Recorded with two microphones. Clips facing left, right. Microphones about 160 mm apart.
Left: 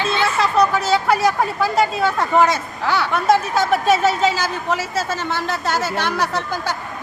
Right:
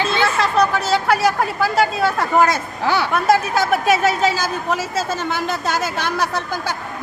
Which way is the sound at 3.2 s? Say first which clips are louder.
Left 1 dB; 10° right (ahead or behind).